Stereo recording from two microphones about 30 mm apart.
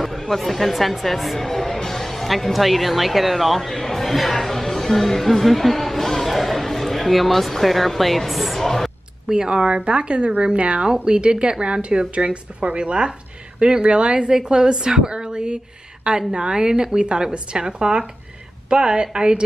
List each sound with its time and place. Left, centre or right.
0.4 s speech: centre
9.3 s a woman's voice: right
9.7 s a woman's voice: right